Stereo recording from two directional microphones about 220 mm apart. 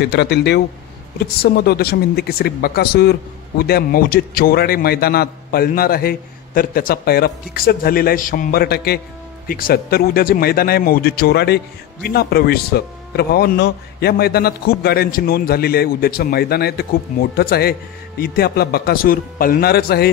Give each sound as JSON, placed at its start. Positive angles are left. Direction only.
{"t": 0.0, "sound": "speech", "side_deg": 50}